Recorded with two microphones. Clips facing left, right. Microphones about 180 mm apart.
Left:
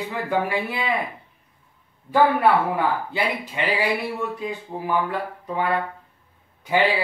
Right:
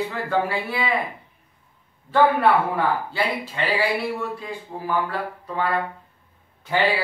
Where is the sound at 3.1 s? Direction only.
15° left (ahead or behind).